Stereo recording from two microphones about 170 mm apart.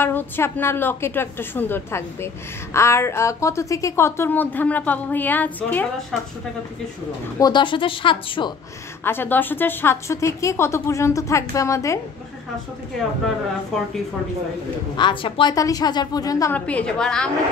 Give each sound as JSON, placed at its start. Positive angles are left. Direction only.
{"t": 0.0, "sound": "a woman's voice", "side_deg": 15}
{"t": 7.3, "sound": "a woman's voice", "side_deg": 25}
{"t": 9.0, "sound": "a woman's voice", "side_deg": 10}
{"t": 15.0, "sound": "a woman's voice", "side_deg": 30}
{"t": 16.5, "sound": "a woman's voice", "side_deg": 10}